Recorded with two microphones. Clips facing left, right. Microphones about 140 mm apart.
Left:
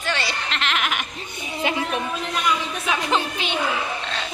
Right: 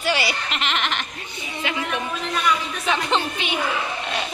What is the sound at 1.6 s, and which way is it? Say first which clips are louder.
Speech: left 3 dB; 35° left (ahead or behind).